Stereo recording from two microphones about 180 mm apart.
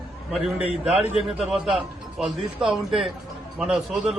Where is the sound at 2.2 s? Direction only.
Centre (ahead or behind).